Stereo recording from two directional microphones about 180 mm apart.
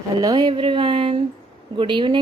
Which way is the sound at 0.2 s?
20° right (ahead or behind).